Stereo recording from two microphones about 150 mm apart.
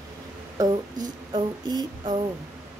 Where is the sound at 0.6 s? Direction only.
25° right (ahead or behind).